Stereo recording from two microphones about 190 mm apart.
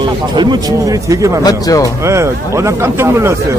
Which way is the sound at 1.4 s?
20° left (ahead or behind).